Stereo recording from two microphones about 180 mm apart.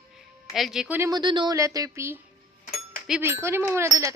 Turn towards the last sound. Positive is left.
turn(degrees=-15)  # may be behind; listen again after turning